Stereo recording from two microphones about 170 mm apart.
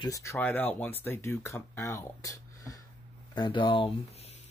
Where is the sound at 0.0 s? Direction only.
20° left (ahead or behind).